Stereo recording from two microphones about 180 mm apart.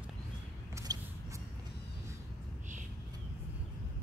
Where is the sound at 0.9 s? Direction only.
20° right (ahead or behind).